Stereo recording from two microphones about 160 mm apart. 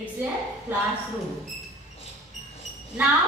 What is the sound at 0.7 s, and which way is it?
Speech, 10° right (ahead or behind).